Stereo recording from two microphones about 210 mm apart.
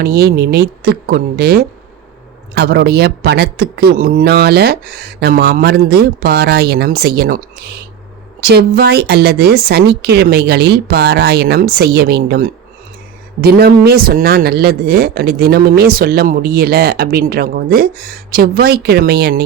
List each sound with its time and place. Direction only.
0.0 s speech: 50° right (ahead or behind)